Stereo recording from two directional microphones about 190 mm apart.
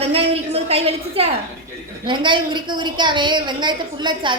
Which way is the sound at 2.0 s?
25° right (ahead or behind).